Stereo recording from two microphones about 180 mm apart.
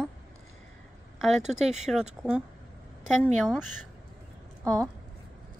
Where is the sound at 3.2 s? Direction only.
Centre (ahead or behind).